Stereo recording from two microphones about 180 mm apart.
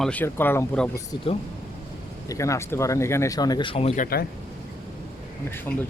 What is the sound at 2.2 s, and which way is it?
Speech, 15° left (ahead or behind).